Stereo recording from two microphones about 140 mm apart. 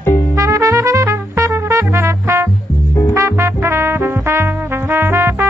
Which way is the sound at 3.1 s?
20° right (ahead or behind).